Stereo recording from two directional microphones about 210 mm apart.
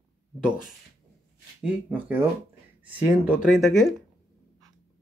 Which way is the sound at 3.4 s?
Centre (ahead or behind).